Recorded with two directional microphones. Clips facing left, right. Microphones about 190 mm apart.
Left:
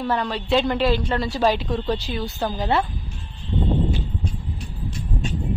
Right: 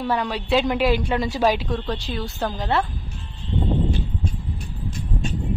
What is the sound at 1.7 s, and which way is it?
Speech, centre (ahead or behind).